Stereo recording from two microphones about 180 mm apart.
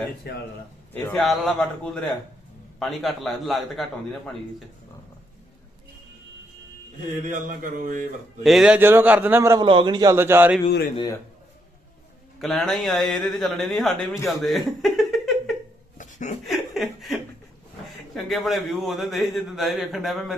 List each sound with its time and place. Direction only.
0.3 s speech: 60° left (ahead or behind)
0.9 s a man's voice: 5° left (ahead or behind)
7.3 s speech: 45° right (ahead or behind)
8.4 s a man's voice: centre (ahead or behind)
9.6 s a man's voice: 25° right (ahead or behind); by 10.6 s 10° right (ahead or behind)
12.4 s a man's voice: centre (ahead or behind)
14.3 s a sound: centre (ahead or behind)
16.0 s a sound: 40° left (ahead or behind)
16.5 s chuckle: centre (ahead or behind)
18.1 s a man's voice: centre (ahead or behind)